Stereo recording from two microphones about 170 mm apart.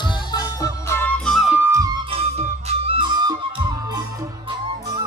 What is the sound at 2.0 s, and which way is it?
Music, 35° right (ahead or behind).